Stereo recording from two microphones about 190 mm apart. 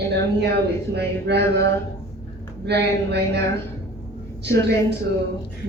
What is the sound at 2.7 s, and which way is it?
Speech, 60° right (ahead or behind).